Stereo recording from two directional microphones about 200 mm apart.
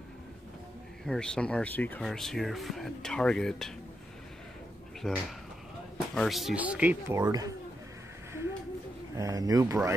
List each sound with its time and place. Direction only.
1.0 s speech: 5° left (ahead or behind)
5.0 s speech: 5° left (ahead or behind); by 7.5 s 15° right (ahead or behind)
9.1 s speech: 15° right (ahead or behind)